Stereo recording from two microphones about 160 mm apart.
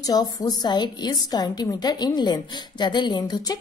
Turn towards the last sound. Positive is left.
turn(degrees=25)  # may be behind; listen again after turning